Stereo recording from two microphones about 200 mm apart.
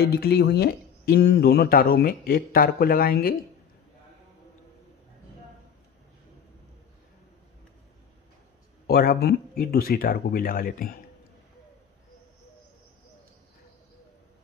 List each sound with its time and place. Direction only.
0.0 s speech: 50° left (ahead or behind)
8.8 s speech: 50° left (ahead or behind)